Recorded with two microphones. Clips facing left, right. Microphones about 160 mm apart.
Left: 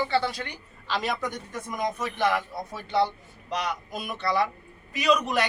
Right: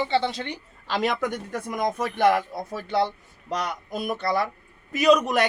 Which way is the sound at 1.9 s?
55° right (ahead or behind).